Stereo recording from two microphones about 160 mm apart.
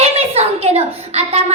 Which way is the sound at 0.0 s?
40° right (ahead or behind).